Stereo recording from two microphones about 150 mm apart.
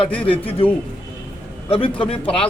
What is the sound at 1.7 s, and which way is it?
Speech, 35° left (ahead or behind).